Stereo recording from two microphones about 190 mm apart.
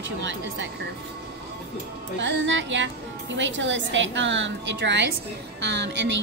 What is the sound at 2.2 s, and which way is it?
Speech, 75° right (ahead or behind).